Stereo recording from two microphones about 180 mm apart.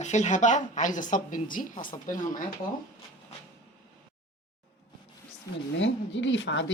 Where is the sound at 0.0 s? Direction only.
40° left (ahead or behind).